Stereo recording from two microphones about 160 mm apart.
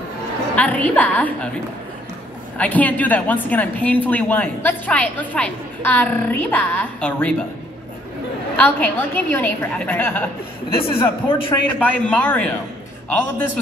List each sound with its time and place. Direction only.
0.6 s a woman's voice: 10° left (ahead or behind)
2.5 s a woman's voice: 10° left (ahead or behind)
8.5 s a woman's voice: 10° left (ahead or behind)
10.8 s a man's voice: 35° left (ahead or behind)
11.8 s a woman's voice: 10° left (ahead or behind)